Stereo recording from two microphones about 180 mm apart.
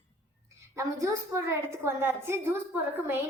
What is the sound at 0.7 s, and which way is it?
A woman's voice, 15° right (ahead or behind).